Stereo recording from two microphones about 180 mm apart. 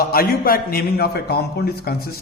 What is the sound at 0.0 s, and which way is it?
A man's voice, 55° left (ahead or behind).